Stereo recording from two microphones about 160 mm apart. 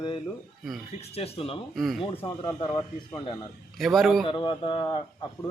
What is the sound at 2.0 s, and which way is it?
Speech, 35° left (ahead or behind).